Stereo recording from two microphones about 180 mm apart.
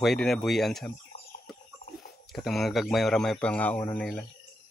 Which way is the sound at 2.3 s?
Centre (ahead or behind).